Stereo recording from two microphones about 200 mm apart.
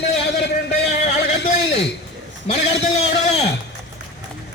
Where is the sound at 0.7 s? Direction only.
35° left (ahead or behind).